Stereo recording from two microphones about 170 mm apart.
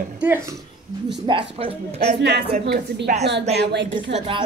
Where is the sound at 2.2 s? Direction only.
70° right (ahead or behind).